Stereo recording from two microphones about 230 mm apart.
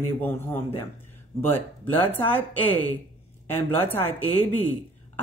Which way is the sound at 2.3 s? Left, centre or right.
Centre.